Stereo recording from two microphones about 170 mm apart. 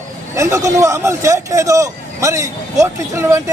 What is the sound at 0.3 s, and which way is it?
A man's voice, 15° right (ahead or behind).